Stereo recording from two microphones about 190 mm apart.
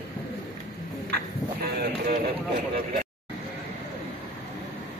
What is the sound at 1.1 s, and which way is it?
Clip-clop, 55° right (ahead or behind).